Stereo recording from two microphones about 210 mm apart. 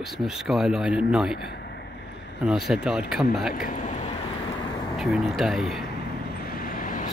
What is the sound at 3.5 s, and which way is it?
Speech, 40° left (ahead or behind).